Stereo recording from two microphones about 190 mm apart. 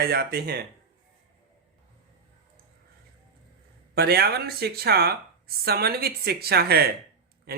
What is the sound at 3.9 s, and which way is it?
Speech, 55° right (ahead or behind).